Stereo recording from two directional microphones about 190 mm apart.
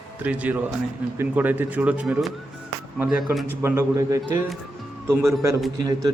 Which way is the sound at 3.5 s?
15° right (ahead or behind).